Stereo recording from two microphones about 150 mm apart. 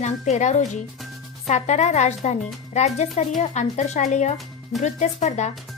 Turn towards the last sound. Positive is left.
turn(degrees=50)  # may be behind; listen again after turning